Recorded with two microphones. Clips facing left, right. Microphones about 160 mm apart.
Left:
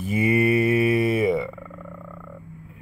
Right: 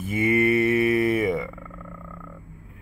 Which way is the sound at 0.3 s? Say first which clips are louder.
Even; 35° left (ahead or behind).